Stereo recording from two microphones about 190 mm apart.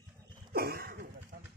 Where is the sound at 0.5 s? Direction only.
55° right (ahead or behind).